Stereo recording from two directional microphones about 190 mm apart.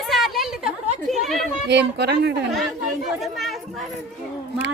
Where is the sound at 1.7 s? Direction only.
60° right (ahead or behind).